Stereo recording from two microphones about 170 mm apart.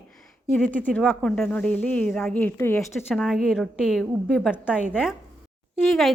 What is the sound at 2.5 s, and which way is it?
Speech, 15° left (ahead or behind).